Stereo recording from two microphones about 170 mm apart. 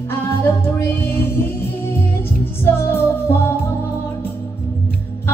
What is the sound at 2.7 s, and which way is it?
Music, 15° left (ahead or behind).